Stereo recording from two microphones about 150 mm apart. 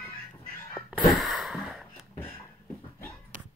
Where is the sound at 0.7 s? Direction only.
Centre (ahead or behind).